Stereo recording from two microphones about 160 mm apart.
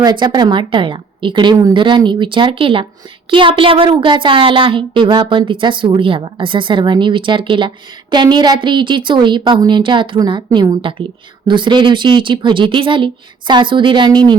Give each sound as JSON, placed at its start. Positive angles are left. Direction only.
{"t": 0.0, "sound": "a woman's voice", "side_deg": -30}